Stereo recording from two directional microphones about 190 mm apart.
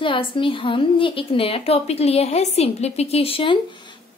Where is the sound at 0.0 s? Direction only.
25° left (ahead or behind).